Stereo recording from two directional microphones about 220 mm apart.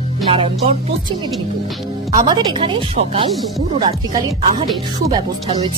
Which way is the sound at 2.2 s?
20° right (ahead or behind).